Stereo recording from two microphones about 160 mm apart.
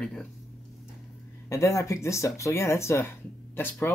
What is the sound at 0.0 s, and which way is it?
Speech, 5° left (ahead or behind).